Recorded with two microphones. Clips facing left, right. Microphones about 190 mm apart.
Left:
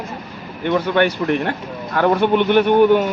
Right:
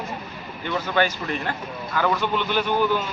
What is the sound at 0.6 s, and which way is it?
A man's voice, 60° left (ahead or behind).